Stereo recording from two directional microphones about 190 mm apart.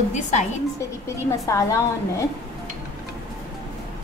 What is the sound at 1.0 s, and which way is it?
A woman's voice, 15° left (ahead or behind).